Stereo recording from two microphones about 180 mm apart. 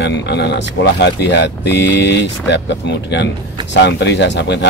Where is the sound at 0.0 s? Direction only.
70° left (ahead or behind).